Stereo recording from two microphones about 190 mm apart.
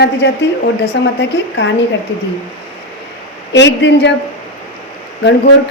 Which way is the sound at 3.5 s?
70° left (ahead or behind).